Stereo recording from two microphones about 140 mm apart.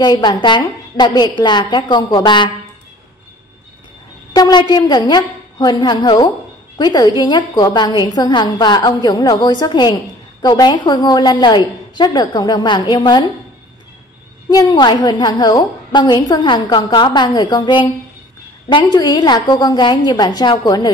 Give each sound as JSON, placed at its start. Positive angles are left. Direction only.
{"t": 0.0, "sound": "a woman's voice", "side_deg": 30}
{"t": 4.3, "sound": "a woman's voice", "side_deg": 30}
{"t": 14.5, "sound": "a woman's voice", "side_deg": 25}